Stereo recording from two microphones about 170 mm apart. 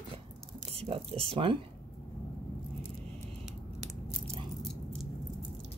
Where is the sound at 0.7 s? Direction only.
35° right (ahead or behind).